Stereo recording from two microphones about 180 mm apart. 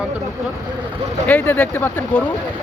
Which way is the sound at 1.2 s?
10° left (ahead or behind).